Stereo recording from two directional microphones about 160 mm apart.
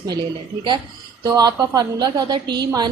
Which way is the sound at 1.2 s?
25° right (ahead or behind).